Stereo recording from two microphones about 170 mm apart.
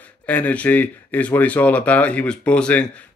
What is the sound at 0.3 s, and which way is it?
Speech, 10° left (ahead or behind).